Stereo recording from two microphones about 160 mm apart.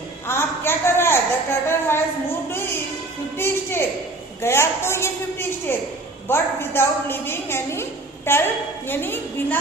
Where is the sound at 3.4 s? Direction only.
15° left (ahead or behind).